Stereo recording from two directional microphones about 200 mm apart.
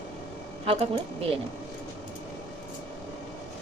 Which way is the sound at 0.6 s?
30° right (ahead or behind).